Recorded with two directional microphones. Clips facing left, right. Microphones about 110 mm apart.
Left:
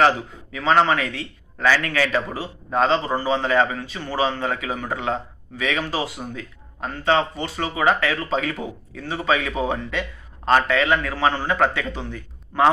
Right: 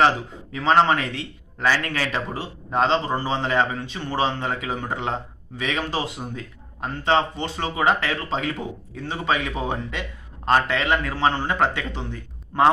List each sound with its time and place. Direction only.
0.0 s a man's voice: 25° right (ahead or behind)